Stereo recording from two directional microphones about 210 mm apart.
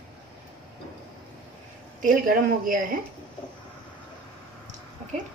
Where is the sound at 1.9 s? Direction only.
40° right (ahead or behind).